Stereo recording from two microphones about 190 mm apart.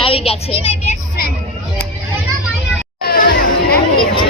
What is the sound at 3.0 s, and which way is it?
Music, 55° left (ahead or behind).